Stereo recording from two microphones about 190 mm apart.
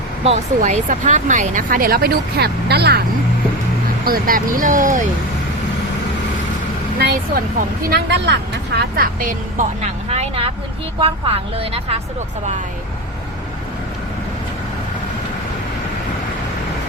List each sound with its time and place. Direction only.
0.3 s speech: 40° right (ahead or behind); by 3.0 s 60° right (ahead or behind)
4.0 s speech: 50° right (ahead or behind)
7.9 s a woman's voice: 60° right (ahead or behind); by 11.9 s 30° right (ahead or behind)